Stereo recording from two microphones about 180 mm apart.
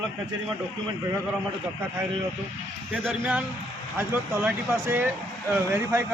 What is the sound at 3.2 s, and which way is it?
A man's voice, 10° right (ahead or behind).